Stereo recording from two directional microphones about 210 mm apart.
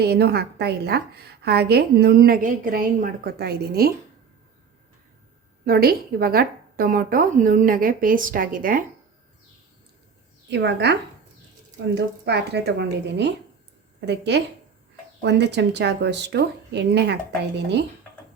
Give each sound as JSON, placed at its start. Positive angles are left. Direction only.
{"t": 0.0, "sound": "a woman's voice", "side_deg": -50}
{"t": 5.6, "sound": "a woman's voice", "side_deg": -45}
{"t": 10.5, "sound": "speech", "side_deg": -55}
{"t": 11.9, "sound": "a woman's voice", "side_deg": -55}